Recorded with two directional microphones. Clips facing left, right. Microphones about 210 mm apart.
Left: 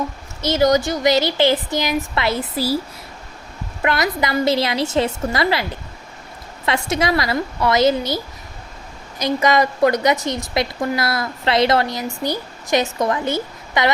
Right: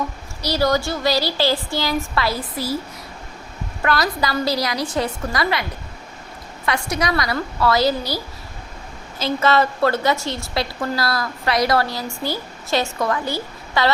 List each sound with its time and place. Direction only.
0.4 s a woman's voice: 20° left (ahead or behind)
3.8 s a woman's voice: 20° left (ahead or behind)
6.7 s a woman's voice: 25° left (ahead or behind)